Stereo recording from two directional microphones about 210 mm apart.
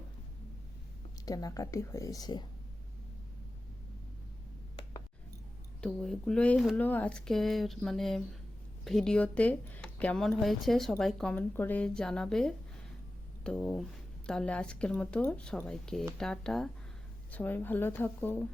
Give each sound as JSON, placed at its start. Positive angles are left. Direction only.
{"t": 1.2, "sound": "speech", "side_deg": 15}
{"t": 5.8, "sound": "speech", "side_deg": 5}